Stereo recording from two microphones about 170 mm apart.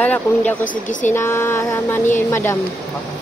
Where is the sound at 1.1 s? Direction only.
15° left (ahead or behind).